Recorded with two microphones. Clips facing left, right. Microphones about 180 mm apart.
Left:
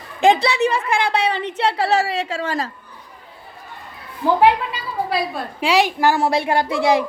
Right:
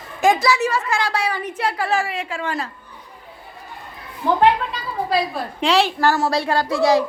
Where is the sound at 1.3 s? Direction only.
25° left (ahead or behind).